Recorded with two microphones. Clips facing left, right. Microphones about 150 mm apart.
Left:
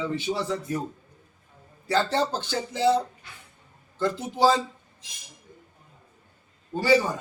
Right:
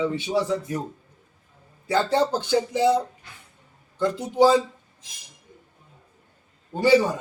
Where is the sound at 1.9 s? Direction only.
15° right (ahead or behind).